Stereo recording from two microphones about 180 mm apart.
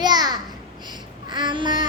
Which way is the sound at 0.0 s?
20° right (ahead or behind).